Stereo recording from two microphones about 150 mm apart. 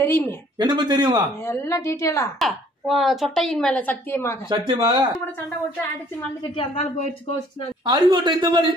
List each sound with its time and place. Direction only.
0.0 s a woman's voice: 15° left (ahead or behind)
0.6 s a man's voice: 30° right (ahead or behind)
1.4 s a woman's voice: 15° left (ahead or behind)
2.3 s speech: centre (ahead or behind)
4.5 s speech: 30° right (ahead or behind)
6.5 s a woman's voice: 35° left (ahead or behind)
7.8 s speech: 30° right (ahead or behind)